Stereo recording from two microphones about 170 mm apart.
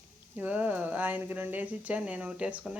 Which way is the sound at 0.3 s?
10° right (ahead or behind).